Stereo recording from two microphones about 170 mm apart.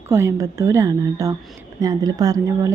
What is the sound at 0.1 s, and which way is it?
A woman's voice, 15° right (ahead or behind).